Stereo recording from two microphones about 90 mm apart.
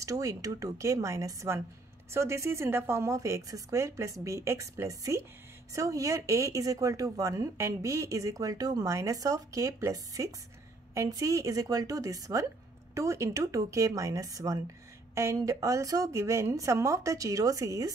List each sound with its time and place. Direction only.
0.0 s speech: 35° right (ahead or behind)